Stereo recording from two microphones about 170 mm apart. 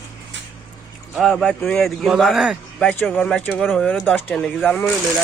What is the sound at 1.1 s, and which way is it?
Speech, centre (ahead or behind).